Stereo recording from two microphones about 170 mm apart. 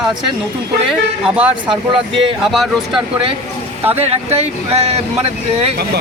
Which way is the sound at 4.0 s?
35° right (ahead or behind).